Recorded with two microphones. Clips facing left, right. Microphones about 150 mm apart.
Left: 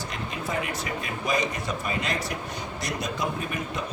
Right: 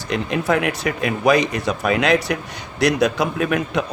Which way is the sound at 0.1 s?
80° right.